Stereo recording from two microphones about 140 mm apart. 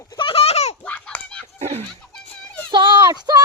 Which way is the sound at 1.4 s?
50° right (ahead or behind).